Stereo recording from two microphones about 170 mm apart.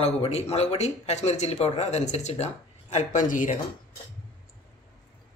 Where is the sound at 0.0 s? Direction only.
35° left (ahead or behind).